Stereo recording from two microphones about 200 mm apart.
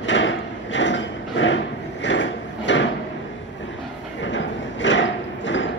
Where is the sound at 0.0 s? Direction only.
65° left (ahead or behind).